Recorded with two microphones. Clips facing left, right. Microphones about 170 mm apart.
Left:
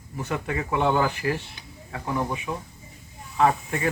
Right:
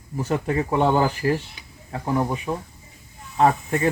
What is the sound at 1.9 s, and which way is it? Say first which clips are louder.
Speech: right 4 dB; 30° right (ahead or behind).